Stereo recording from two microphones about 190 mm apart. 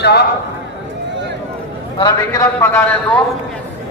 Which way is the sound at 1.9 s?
20° left (ahead or behind).